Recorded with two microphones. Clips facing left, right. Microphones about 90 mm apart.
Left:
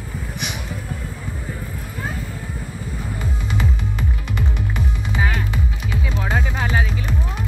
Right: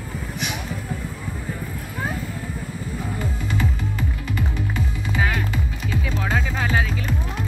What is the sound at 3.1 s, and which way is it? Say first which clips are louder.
Music: left 2 dB; 20° left (ahead or behind).